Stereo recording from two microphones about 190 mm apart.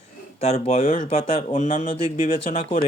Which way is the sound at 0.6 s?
30° left (ahead or behind).